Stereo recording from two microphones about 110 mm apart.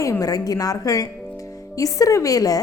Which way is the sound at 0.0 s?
30° left (ahead or behind).